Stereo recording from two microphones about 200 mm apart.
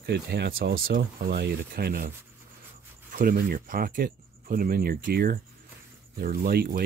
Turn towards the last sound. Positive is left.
turn(degrees=-50)  # may be behind; listen again after turning